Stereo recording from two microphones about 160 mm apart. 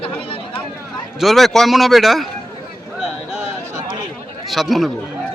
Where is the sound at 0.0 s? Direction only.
35° left (ahead or behind).